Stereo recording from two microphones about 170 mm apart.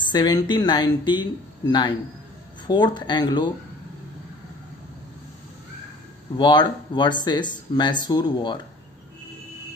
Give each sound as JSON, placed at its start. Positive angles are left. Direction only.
{"t": 0.0, "sound": "speech", "side_deg": 25}
{"t": 6.3, "sound": "speech", "side_deg": 25}